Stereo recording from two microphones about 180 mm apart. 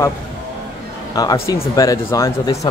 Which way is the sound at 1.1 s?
20° left (ahead or behind).